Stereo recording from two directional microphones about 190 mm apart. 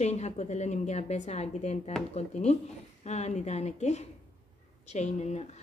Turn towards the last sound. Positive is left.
turn(degrees=35)  # may be behind; listen again after turning